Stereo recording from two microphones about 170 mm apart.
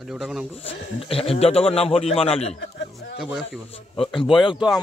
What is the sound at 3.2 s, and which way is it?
Speech, centre (ahead or behind).